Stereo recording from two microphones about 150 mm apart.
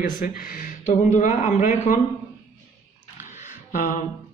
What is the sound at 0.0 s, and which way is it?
Speech, 70° left (ahead or behind).